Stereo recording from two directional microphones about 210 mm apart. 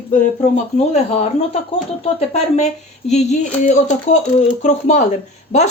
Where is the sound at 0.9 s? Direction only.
30° left (ahead or behind).